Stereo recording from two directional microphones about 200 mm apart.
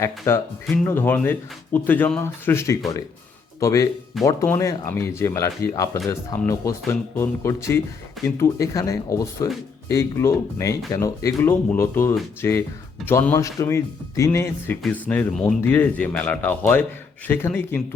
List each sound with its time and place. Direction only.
0.0 s speech: 15° left (ahead or behind)